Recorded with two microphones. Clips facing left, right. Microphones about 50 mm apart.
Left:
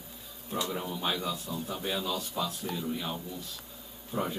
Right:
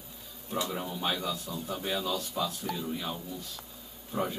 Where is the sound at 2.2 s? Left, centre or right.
Centre.